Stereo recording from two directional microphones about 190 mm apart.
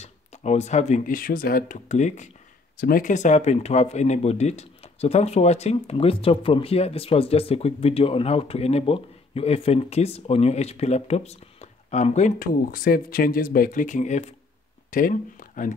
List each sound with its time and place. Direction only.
0.0 s speech: 35° left (ahead or behind)